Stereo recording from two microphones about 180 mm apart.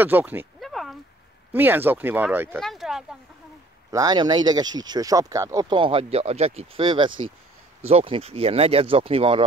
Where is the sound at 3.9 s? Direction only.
20° right (ahead or behind).